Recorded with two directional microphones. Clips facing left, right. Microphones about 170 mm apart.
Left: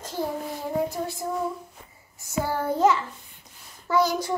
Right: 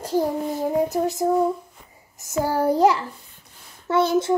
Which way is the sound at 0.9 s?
40° right (ahead or behind).